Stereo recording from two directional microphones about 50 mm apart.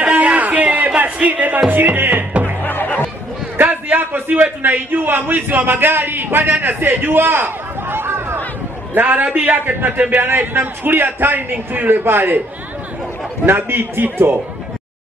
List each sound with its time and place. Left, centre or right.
0.0 s a sound: right
1.7 s music: right
2.6 s chatter: left
3.6 s a man's voice: right
6.6 s a sound: right
8.9 s a man's voice: right
13.5 s a man's voice: right